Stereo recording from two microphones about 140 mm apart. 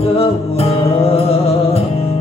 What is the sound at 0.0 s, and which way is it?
Music, 45° left (ahead or behind).